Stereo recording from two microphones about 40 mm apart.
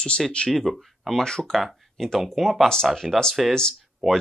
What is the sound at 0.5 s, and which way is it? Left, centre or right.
Speech, centre.